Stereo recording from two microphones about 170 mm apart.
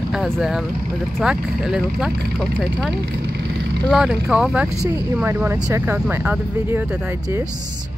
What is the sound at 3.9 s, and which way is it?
Speech, 5° right (ahead or behind).